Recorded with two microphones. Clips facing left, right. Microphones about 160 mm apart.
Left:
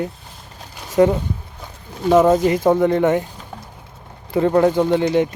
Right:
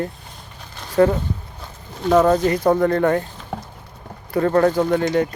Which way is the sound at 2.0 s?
10° left (ahead or behind).